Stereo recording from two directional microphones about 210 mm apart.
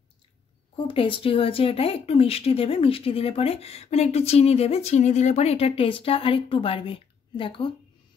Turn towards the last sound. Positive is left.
turn(degrees=25)  # may be behind; listen again after turning